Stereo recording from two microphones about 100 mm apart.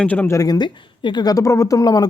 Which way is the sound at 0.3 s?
35° left (ahead or behind).